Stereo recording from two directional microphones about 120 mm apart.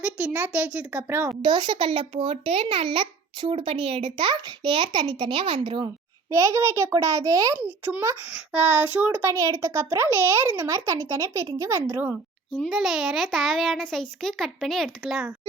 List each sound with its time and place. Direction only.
0.0 s a child's voice: 10° right (ahead or behind)
1.4 s a child's voice: 40° right (ahead or behind)
6.3 s a child's voice: 20° right (ahead or behind)
12.5 s a child's voice: centre (ahead or behind)